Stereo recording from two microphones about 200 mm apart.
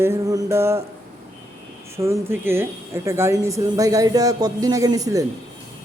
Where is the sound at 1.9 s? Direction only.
15° right (ahead or behind).